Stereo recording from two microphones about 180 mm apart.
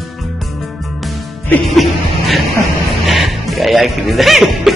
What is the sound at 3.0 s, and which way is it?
Speech, centre (ahead or behind).